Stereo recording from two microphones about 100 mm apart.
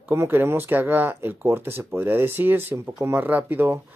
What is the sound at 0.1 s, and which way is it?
Speech, 25° right (ahead or behind).